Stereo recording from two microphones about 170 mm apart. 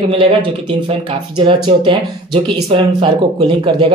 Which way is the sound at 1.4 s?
30° right (ahead or behind).